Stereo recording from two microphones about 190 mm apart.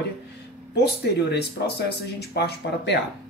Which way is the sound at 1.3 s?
60° left (ahead or behind).